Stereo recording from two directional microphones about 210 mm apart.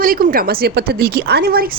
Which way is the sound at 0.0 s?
45° right (ahead or behind).